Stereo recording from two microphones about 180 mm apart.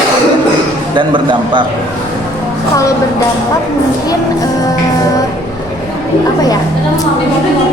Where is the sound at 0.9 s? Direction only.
25° right (ahead or behind).